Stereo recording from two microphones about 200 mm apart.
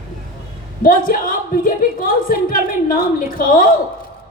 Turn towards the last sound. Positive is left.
turn(degrees=45)  # may be behind; listen again after turning